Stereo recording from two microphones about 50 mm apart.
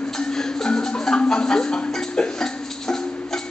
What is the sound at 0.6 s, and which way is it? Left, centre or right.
Marimba, centre.